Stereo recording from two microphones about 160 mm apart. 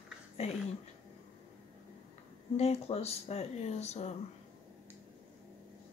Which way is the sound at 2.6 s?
40° left (ahead or behind).